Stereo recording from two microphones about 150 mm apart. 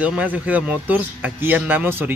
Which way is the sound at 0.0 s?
10° right (ahead or behind).